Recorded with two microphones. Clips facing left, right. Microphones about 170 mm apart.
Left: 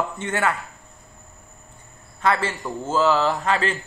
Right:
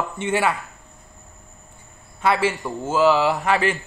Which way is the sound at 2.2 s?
10° right (ahead or behind).